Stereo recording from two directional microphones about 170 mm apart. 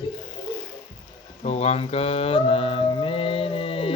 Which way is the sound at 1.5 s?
40° left (ahead or behind).